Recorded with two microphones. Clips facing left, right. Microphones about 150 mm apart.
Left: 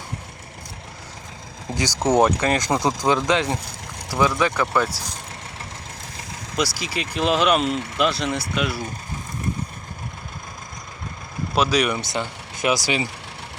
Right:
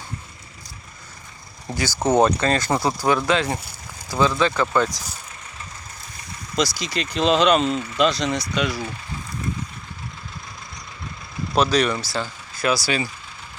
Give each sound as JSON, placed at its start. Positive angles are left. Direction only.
{"t": 1.7, "sound": "speech", "side_deg": 15}
{"t": 6.6, "sound": "speech", "side_deg": 5}
{"t": 11.5, "sound": "speech", "side_deg": 10}
{"t": 11.9, "sound": "speech", "side_deg": 20}